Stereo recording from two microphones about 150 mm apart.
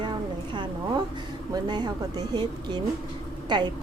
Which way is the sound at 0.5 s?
30° right (ahead or behind).